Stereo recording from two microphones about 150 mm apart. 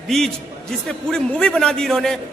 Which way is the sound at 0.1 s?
5° left (ahead or behind).